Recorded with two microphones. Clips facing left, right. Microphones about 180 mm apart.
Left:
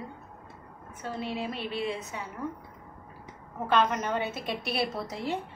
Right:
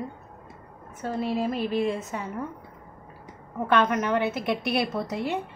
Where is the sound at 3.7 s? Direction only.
60° right (ahead or behind).